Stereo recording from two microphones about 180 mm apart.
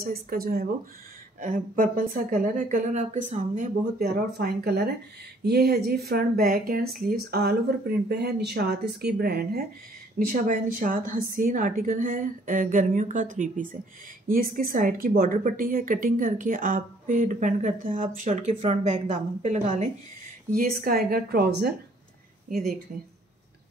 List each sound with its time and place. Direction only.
0.0 s speech: 55° right (ahead or behind)
1.4 s a woman's voice: 45° right (ahead or behind)
4.0 s a woman's voice: 60° right (ahead or behind); by 19.9 s 40° right (ahead or behind)
20.5 s speech: 55° right (ahead or behind)